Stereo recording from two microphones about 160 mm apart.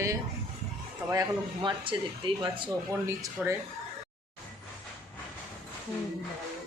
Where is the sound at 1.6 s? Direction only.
30° right (ahead or behind).